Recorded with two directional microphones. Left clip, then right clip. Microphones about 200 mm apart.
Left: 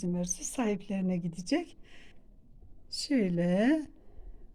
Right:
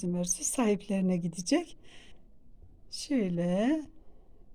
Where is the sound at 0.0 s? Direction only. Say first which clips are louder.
Right 2 dB; 15° right (ahead or behind).